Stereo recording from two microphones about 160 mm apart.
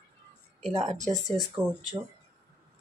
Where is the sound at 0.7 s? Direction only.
50° right (ahead or behind).